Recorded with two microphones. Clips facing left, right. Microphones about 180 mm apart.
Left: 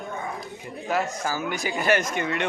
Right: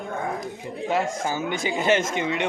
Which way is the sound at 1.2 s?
25° right (ahead or behind).